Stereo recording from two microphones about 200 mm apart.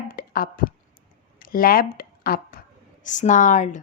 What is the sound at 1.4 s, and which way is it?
A woman's voice, 45° left (ahead or behind).